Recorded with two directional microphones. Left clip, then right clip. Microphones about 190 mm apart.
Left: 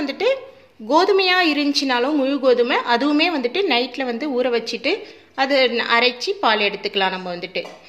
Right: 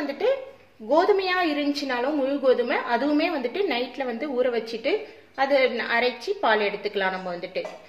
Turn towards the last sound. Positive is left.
turn(degrees=50)  # may be behind; listen again after turning